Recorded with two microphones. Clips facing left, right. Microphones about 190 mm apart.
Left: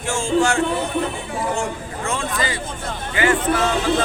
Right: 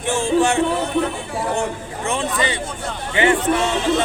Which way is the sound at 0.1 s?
20° right (ahead or behind).